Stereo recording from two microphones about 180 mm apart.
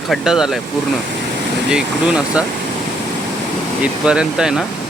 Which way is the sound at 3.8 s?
5° right (ahead or behind).